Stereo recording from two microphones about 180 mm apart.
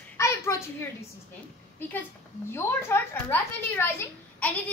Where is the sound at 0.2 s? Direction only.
15° left (ahead or behind).